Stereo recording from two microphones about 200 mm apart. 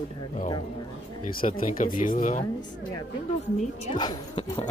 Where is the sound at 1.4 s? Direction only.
45° left (ahead or behind).